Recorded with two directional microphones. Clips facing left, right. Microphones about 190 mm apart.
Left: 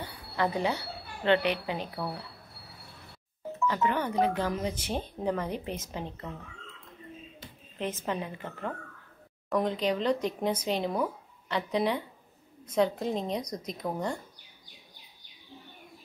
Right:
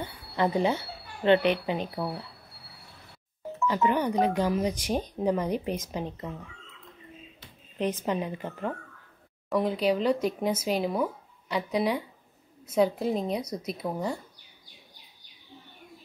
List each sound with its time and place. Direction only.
0.4 s speech: 20° right (ahead or behind)
3.6 s speech: 15° right (ahead or behind)
7.8 s speech: 15° right (ahead or behind)